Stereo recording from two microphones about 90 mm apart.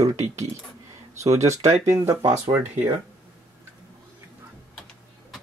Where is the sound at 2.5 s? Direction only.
60° right (ahead or behind).